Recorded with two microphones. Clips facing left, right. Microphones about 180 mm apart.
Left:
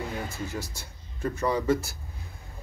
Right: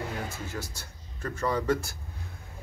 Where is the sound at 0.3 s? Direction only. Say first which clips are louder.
Left 3 dB; 10° left (ahead or behind).